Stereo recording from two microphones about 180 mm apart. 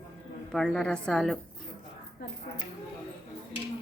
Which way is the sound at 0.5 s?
5° left (ahead or behind).